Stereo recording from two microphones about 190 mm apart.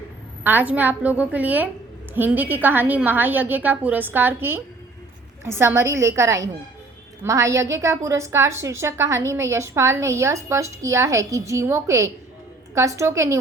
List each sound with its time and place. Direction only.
0.4 s a woman's voice: 10° right (ahead or behind)